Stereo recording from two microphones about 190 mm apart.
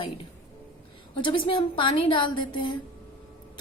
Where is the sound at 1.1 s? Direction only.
25° left (ahead or behind).